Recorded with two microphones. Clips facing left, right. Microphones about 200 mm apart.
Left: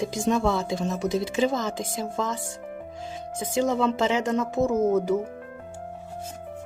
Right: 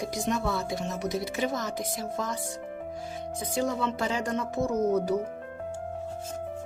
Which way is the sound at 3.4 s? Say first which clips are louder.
Left 5 dB; 25° left (ahead or behind).